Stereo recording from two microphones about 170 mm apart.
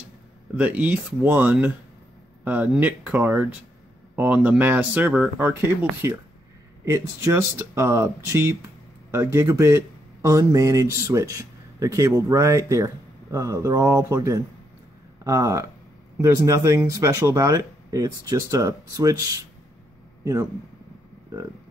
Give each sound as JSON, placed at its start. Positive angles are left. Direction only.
{"t": 0.6, "sound": "speech", "side_deg": -10}
{"t": 6.0, "sound": "speech", "side_deg": -20}